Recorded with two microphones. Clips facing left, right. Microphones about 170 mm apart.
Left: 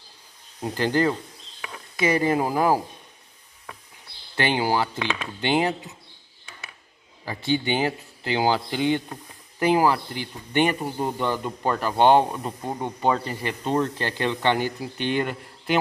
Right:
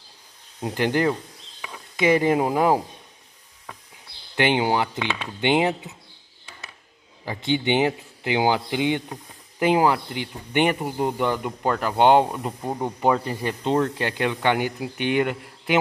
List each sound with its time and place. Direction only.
0.6 s speech: 15° right (ahead or behind)
4.4 s speech: 20° right (ahead or behind)
7.2 s speech: 20° right (ahead or behind)